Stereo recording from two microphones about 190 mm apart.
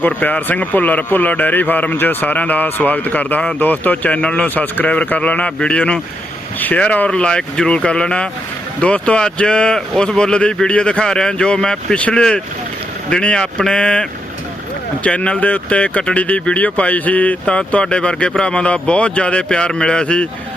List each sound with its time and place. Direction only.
0.0 s speech: 10° left (ahead or behind)